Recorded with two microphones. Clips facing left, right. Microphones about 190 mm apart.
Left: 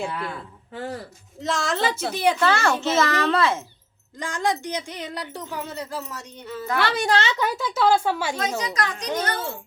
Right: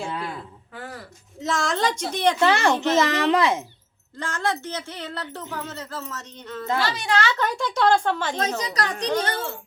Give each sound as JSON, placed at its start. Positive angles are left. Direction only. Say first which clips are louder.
{"t": 0.1, "sound": "speech", "louder": "even", "side_deg": -20}
{"t": 0.7, "sound": "speech", "louder": "left 7 dB", "side_deg": 25}
{"t": 1.4, "sound": "a woman's voice", "louder": "even", "side_deg": 0}
{"t": 2.4, "sound": "speech", "louder": "right 2 dB", "side_deg": -15}
{"t": 4.2, "sound": "speech", "louder": "left 2 dB", "side_deg": 15}
{"t": 6.7, "sound": "a woman's voice", "louder": "left 4 dB", "side_deg": 55}
{"t": 7.1, "sound": "speech", "louder": "right 2 dB", "side_deg": 25}
{"t": 7.3, "sound": "speech", "louder": "even", "side_deg": 5}
{"t": 8.4, "sound": "speech", "louder": "even", "side_deg": -35}